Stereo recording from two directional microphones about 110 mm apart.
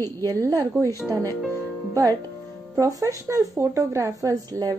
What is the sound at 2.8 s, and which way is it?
A woman's voice, 30° right (ahead or behind).